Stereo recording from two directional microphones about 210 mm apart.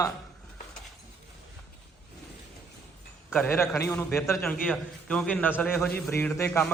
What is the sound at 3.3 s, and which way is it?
A man's voice, 10° left (ahead or behind).